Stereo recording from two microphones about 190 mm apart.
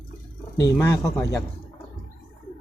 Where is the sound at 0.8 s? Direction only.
20° left (ahead or behind).